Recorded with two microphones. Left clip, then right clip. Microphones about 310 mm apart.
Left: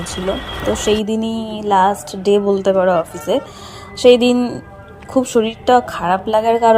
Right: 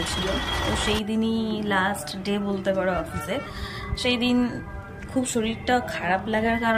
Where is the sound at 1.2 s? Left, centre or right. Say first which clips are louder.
Left 7 dB; centre.